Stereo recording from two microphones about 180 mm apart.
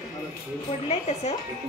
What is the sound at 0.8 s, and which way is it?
Speech, 35° left (ahead or behind).